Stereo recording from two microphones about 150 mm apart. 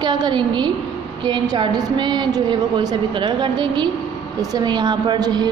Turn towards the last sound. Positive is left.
turn(degrees=-25)  # may be behind; listen again after turning